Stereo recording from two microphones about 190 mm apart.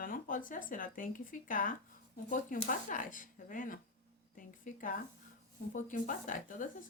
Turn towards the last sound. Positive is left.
turn(degrees=45)  # may be behind; listen again after turning